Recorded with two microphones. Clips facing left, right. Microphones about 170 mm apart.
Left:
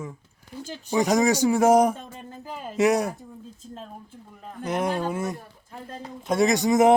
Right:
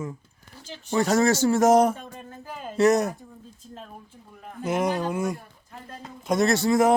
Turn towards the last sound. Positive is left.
turn(degrees=20)  # may be behind; listen again after turning